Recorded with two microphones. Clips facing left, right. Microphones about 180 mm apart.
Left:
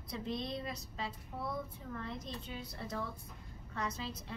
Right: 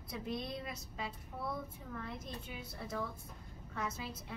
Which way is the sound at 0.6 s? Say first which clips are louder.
Left 2 dB; 5° right (ahead or behind).